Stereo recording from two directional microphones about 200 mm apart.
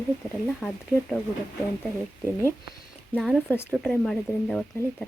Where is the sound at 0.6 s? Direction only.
5° left (ahead or behind).